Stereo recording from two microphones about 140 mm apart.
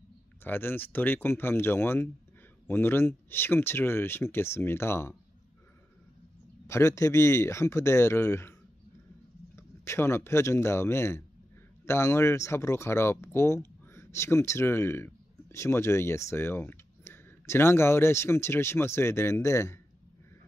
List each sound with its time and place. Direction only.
0.4 s speech: 15° left (ahead or behind)
6.7 s speech: 20° left (ahead or behind)
9.6 s speech: 20° left (ahead or behind)